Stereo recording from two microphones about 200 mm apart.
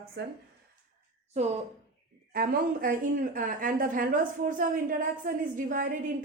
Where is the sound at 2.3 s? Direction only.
45° right (ahead or behind).